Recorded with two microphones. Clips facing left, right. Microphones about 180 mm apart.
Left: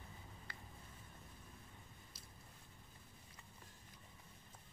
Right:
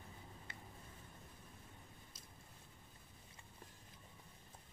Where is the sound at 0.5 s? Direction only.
25° right (ahead or behind).